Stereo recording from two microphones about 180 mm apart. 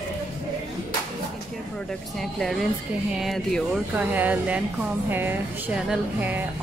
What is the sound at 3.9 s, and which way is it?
A woman's voice, 10° right (ahead or behind).